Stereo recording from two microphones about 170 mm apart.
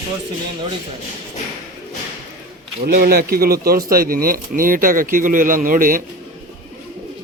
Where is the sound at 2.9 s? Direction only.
60° right (ahead or behind).